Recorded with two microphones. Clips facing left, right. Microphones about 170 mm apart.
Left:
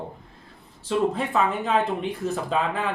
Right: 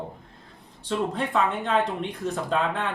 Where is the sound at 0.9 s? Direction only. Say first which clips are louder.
Left 3 dB; centre (ahead or behind).